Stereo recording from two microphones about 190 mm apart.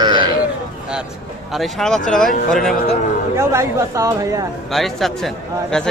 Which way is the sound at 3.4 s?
15° right (ahead or behind).